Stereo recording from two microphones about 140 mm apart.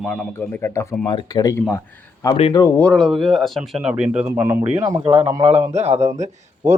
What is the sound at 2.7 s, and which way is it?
Speech, 10° left (ahead or behind).